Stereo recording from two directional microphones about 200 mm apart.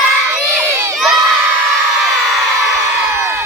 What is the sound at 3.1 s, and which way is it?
Crowd, 15° right (ahead or behind).